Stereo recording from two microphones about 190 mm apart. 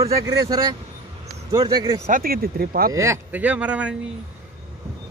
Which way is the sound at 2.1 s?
50° right (ahead or behind).